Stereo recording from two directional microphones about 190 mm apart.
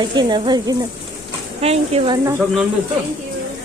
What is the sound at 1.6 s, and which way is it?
Speech, 35° right (ahead or behind).